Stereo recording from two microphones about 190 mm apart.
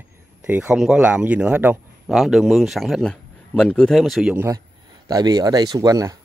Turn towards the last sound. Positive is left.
turn(degrees=-20)  # may be behind; listen again after turning